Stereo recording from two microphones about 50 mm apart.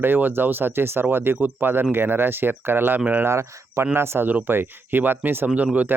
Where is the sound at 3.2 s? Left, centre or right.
Right.